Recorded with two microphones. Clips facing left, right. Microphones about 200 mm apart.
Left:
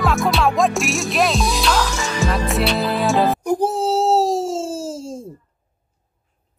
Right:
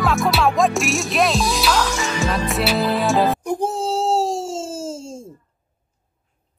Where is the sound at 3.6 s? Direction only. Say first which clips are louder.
Left 3 dB; 30° left (ahead or behind).